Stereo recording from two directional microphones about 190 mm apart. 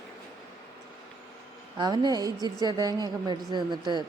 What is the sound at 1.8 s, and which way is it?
Speech, 20° right (ahead or behind).